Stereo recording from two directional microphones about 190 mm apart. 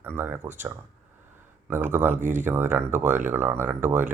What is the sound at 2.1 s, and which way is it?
Speech, 40° right (ahead or behind).